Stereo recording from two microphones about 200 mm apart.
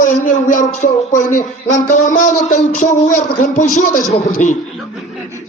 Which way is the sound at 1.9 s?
40° left (ahead or behind).